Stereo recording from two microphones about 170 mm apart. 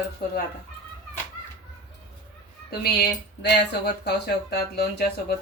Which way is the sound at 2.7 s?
70° left (ahead or behind).